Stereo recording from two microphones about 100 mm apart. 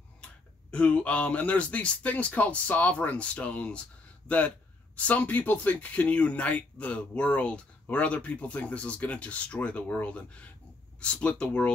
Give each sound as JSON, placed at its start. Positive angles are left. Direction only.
{"t": 0.2, "sound": "speech", "side_deg": 10}